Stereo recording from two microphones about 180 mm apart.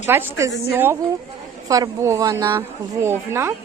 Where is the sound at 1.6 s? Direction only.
20° right (ahead or behind).